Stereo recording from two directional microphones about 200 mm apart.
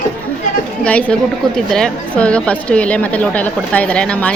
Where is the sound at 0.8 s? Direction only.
5° left (ahead or behind).